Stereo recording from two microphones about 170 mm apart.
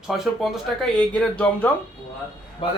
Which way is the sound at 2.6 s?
30° left (ahead or behind).